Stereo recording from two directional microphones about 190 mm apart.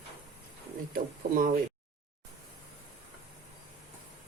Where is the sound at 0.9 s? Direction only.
45° right (ahead or behind).